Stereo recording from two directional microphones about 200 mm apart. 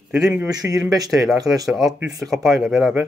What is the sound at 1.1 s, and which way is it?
Speech, centre (ahead or behind).